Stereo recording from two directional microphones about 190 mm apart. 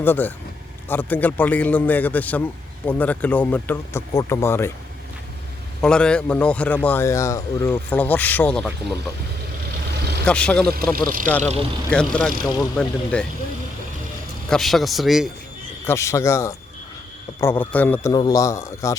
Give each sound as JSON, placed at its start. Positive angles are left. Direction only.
{"t": 0.0, "sound": "a man's voice", "side_deg": 10}
{"t": 5.8, "sound": "a man's voice", "side_deg": 5}
{"t": 9.9, "sound": "vehicle", "side_deg": -60}
{"t": 10.2, "sound": "a man's voice", "side_deg": 5}
{"t": 10.9, "sound": "speech", "side_deg": -50}
{"t": 11.9, "sound": "a man's voice", "side_deg": 5}
{"t": 12.4, "sound": "speech", "side_deg": 20}
{"t": 12.7, "sound": "a man's voice", "side_deg": 5}
{"t": 14.5, "sound": "a man's voice", "side_deg": 0}
{"t": 15.9, "sound": "a man's voice", "side_deg": 15}
{"t": 18.1, "sound": "a man's voice", "side_deg": 20}